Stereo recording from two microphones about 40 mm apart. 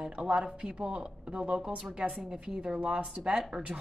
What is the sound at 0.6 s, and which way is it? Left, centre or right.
A woman's voice, right.